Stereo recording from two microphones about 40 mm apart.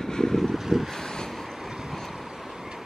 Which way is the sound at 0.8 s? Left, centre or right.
Centre.